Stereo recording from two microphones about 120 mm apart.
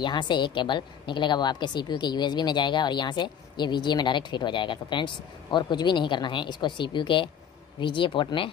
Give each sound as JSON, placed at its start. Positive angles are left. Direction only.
{"t": 0.0, "sound": "a woman's voice", "side_deg": 40}